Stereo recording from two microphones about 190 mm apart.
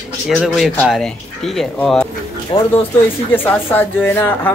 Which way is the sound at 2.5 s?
25° left (ahead or behind).